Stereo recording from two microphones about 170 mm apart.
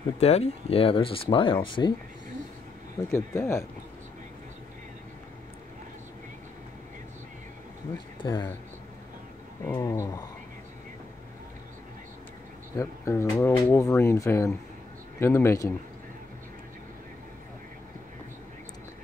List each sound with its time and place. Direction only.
0.2 s speech: 40° left (ahead or behind)
3.1 s speech: 15° left (ahead or behind)
8.2 s speech: 30° left (ahead or behind)
9.7 s speech: 15° left (ahead or behind)
12.7 s speech: 15° left (ahead or behind)